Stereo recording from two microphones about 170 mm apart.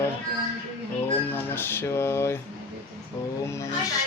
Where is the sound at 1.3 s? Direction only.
15° left (ahead or behind).